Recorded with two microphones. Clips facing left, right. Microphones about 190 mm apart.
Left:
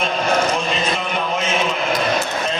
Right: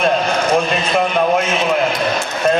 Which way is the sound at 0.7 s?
55° right (ahead or behind).